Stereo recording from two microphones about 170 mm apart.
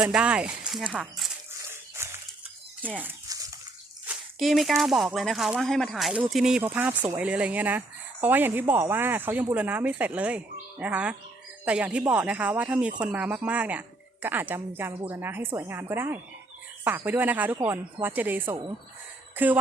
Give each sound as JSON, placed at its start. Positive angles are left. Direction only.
{"t": 0.0, "sound": "speech", "side_deg": -5}
{"t": 1.7, "sound": "dog", "side_deg": -15}
{"t": 4.0, "sound": "speech", "side_deg": -5}